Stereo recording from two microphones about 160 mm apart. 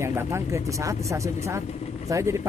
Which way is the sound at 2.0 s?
20° right (ahead or behind).